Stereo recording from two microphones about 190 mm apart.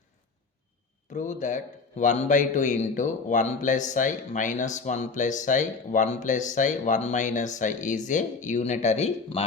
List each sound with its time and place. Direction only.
1.1 s a man's voice: 40° left (ahead or behind)